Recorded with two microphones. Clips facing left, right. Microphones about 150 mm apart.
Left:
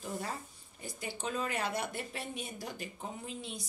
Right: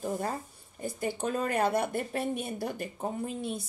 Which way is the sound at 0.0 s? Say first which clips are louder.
Right 7 dB; 50° right (ahead or behind).